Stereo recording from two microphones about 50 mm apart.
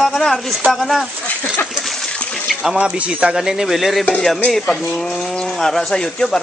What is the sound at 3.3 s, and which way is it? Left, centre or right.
Speech, centre.